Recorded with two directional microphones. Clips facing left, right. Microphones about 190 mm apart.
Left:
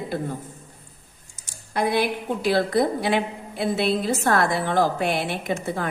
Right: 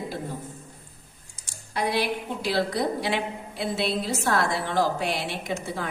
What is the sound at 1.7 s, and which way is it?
A woman's voice, 50° left (ahead or behind).